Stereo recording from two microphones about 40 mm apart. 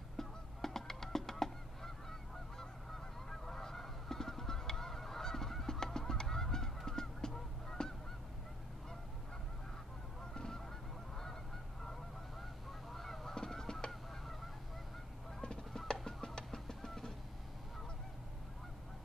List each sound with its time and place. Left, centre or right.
0.2 s goose: centre
10.3 s goose: centre
11.8 s goose: centre
15.4 s goose: centre